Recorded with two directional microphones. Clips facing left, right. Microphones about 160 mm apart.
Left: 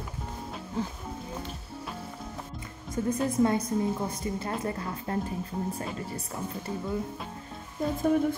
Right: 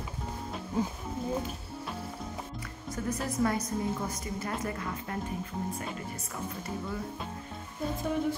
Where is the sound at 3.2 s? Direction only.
25° left (ahead or behind).